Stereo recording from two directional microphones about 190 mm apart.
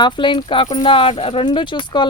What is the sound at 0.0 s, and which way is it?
Speech, 25° left (ahead or behind).